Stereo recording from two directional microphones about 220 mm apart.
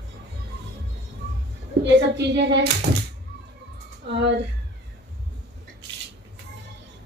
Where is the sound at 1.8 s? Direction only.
55° right (ahead or behind).